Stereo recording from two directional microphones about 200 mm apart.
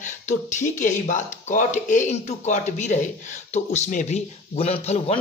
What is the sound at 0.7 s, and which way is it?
Speech, 40° left (ahead or behind).